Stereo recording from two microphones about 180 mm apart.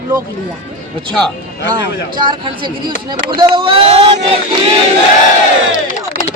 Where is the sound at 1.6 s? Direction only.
25° right (ahead or behind).